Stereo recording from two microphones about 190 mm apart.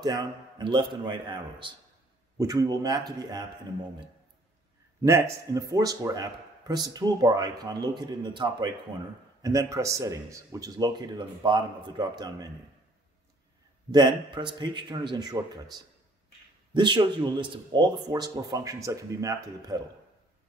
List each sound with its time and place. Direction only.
0.0 s speech: 20° right (ahead or behind)
5.0 s speech: 15° right (ahead or behind)
13.9 s speech: 25° right (ahead or behind)